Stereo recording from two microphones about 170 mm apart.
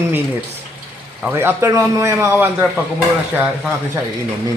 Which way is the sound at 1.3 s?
15° right (ahead or behind).